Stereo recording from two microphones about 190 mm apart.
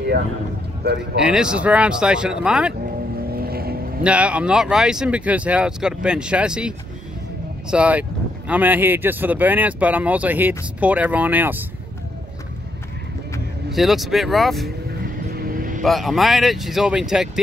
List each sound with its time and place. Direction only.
1.1 s speech: 5° right (ahead or behind)
3.3 s boat: 55° right (ahead or behind)
4.0 s speech: 5° right (ahead or behind)
7.7 s speech: 5° right (ahead or behind)
13.7 s speech: centre (ahead or behind)
15.3 s vehicle: 50° right (ahead or behind)
15.8 s speech: centre (ahead or behind)